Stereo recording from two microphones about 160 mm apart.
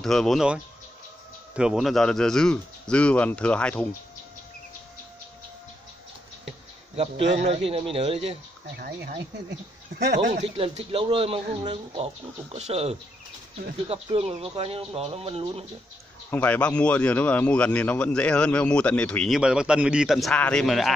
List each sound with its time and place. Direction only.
0.0 s speech: centre (ahead or behind)
1.6 s speech: centre (ahead or behind)
7.4 s speech: 35° right (ahead or behind)
8.7 s speech: 75° right (ahead or behind)
9.9 s speech: 90° right
10.3 s speech: 40° right (ahead or behind)
16.3 s speech: 10° left (ahead or behind)